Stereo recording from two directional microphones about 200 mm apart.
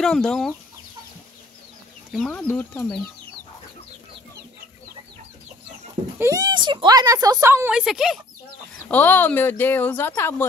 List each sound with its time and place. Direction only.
0.0 s speech: centre (ahead or behind)
2.1 s speech: 10° left (ahead or behind)
6.1 s speech: 15° right (ahead or behind)
8.7 s speech: 10° left (ahead or behind)